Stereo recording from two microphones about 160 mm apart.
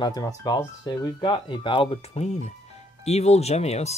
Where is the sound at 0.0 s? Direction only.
25° left (ahead or behind).